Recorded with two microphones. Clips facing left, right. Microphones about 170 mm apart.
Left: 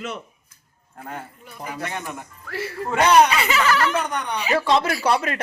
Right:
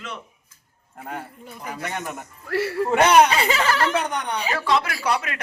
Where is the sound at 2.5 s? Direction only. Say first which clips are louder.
Right 6 dB; 65° right (ahead or behind).